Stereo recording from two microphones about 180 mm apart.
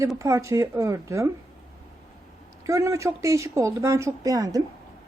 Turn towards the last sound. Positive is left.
turn(degrees=-20)  # may be behind; listen again after turning